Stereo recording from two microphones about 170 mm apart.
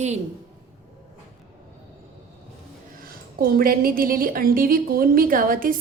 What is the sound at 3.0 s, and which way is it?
A woman's voice, 60° right (ahead or behind).